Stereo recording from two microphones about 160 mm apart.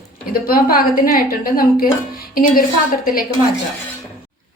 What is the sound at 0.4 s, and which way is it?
A woman's voice, 65° left (ahead or behind).